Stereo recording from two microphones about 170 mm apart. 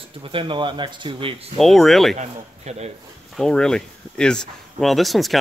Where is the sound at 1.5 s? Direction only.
Centre (ahead or behind).